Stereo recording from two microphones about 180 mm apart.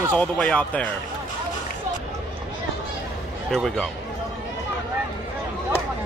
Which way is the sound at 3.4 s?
Centre (ahead or behind).